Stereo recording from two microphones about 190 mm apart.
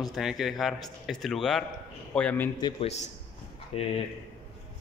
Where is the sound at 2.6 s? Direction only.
35° left (ahead or behind).